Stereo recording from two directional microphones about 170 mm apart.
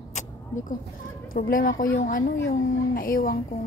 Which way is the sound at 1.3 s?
60° left (ahead or behind).